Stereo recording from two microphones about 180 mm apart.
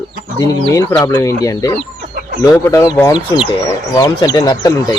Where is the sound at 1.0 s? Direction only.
20° left (ahead or behind).